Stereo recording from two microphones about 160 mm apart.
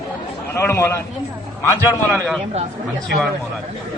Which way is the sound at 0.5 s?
15° left (ahead or behind).